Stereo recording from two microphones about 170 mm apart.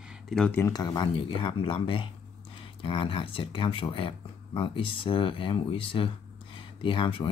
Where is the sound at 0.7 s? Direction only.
25° left (ahead or behind).